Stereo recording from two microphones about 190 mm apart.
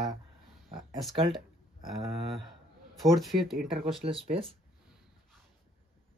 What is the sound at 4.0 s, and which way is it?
Speech, 30° right (ahead or behind).